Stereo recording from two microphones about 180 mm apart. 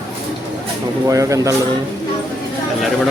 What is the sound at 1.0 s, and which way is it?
Speech, 20° right (ahead or behind).